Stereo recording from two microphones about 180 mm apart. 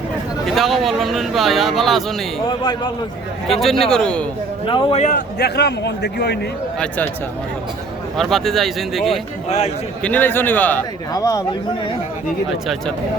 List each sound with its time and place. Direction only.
0.4 s speech: centre (ahead or behind)
2.5 s a man's voice: 25° left (ahead or behind)
3.4 s speech: centre (ahead or behind)
4.6 s a man's voice: 30° left (ahead or behind)
5.4 s a man's voice: 65° left (ahead or behind)
6.7 s a man's voice: 10° left (ahead or behind)
8.1 s speech: centre (ahead or behind)
9.5 s a man's voice: 40° left (ahead or behind)
10.0 s a man's voice: 10° left (ahead or behind)